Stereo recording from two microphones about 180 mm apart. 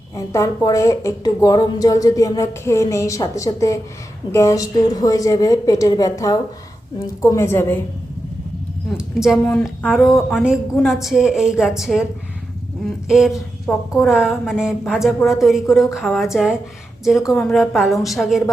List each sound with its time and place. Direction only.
0.3 s a woman's voice: 20° left (ahead or behind)
8.9 s a woman's voice: 5° right (ahead or behind)